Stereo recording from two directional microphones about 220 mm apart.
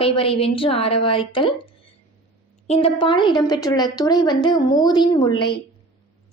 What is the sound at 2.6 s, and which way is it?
A woman's voice, 25° left (ahead or behind).